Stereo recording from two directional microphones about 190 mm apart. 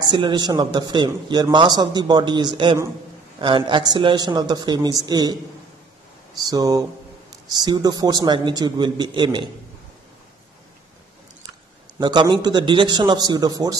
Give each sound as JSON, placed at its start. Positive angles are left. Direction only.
{"t": 0.0, "sound": "a man's voice", "side_deg": -25}
{"t": 6.5, "sound": "a man's voice", "side_deg": -20}
{"t": 12.0, "sound": "a man's voice", "side_deg": -20}